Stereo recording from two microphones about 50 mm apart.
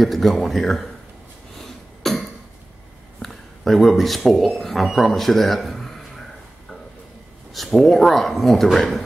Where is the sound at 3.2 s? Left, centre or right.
Centre.